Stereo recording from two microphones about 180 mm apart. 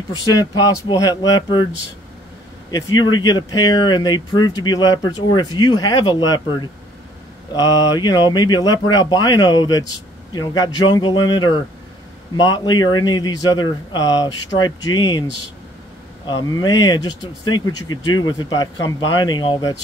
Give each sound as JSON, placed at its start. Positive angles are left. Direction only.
{"t": 0.2, "sound": "speech", "side_deg": 20}
{"t": 2.7, "sound": "speech", "side_deg": 20}
{"t": 16.4, "sound": "speech", "side_deg": 20}